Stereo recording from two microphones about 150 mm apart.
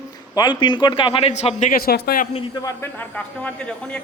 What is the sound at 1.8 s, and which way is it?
Speech, 85° left.